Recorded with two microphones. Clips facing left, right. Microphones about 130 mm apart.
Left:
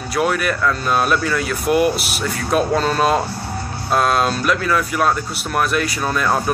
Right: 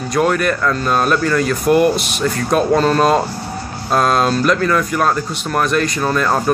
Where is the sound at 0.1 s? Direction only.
5° left (ahead or behind).